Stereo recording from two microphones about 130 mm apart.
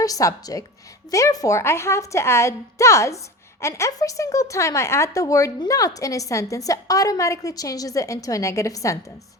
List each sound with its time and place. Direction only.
0.0 s speech: 25° left (ahead or behind)